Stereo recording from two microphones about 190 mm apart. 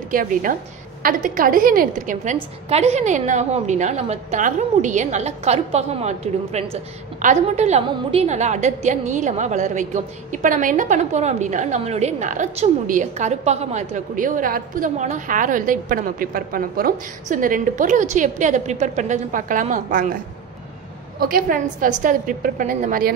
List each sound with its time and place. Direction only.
0.1 s a woman's voice: 45° right (ahead or behind)
21.2 s a woman's voice: 50° right (ahead or behind)